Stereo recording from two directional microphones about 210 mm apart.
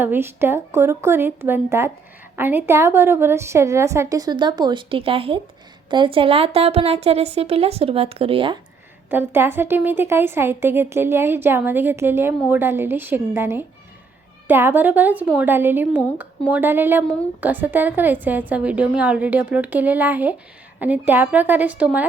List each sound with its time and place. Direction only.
0.0 s a woman's voice: 10° right (ahead or behind); by 8.5 s 25° right (ahead or behind)
9.0 s a woman's voice: 10° right (ahead or behind)